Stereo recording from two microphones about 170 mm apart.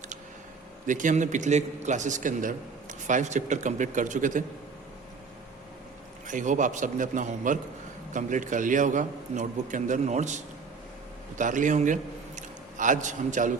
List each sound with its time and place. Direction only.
0.9 s a man's voice: 50° right (ahead or behind)
6.2 s a man's voice: 45° right (ahead or behind)